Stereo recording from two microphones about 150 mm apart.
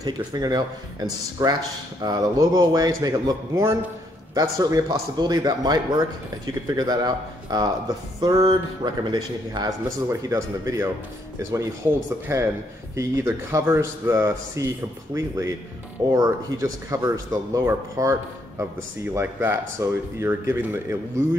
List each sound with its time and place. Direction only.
0.0 s speech: 25° right (ahead or behind)
12.3 s speech: 20° right (ahead or behind)